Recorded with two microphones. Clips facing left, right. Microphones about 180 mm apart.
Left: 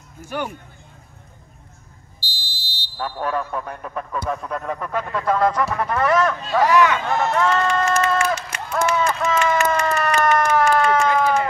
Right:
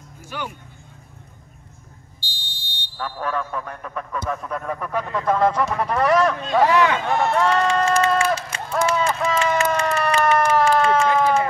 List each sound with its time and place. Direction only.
0.3 s speech: 50° left (ahead or behind)
2.1 s fire alarm: 5° left (ahead or behind)
4.3 s speech: centre (ahead or behind)
4.9 s speech: 20° right (ahead or behind)
5.8 s a sound: 35° right (ahead or behind)